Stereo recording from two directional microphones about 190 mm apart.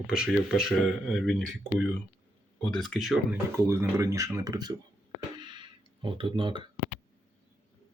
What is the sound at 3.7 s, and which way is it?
Speech, 15° right (ahead or behind).